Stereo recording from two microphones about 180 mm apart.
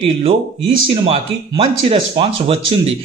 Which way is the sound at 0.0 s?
30° right (ahead or behind).